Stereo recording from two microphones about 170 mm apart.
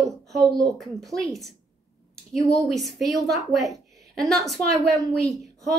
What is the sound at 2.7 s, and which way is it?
A woman's voice, centre (ahead or behind).